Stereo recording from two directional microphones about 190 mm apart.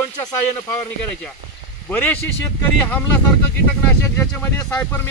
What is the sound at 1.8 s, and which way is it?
Speech, 10° left (ahead or behind).